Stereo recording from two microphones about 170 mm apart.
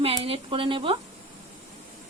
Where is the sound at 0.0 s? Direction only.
30° right (ahead or behind).